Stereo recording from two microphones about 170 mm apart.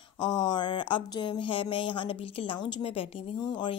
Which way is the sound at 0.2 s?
25° left (ahead or behind).